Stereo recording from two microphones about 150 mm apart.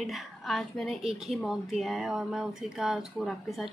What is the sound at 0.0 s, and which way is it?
A woman's voice, centre (ahead or behind).